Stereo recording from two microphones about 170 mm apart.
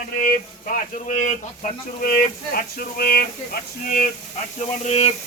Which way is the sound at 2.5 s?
60° left (ahead or behind).